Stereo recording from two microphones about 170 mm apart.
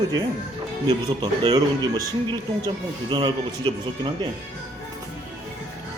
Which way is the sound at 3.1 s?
30° right (ahead or behind).